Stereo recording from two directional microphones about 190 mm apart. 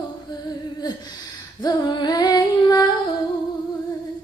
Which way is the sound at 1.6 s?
20° left (ahead or behind).